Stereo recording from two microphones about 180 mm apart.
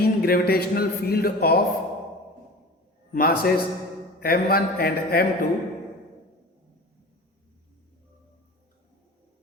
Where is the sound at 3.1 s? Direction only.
55° left (ahead or behind).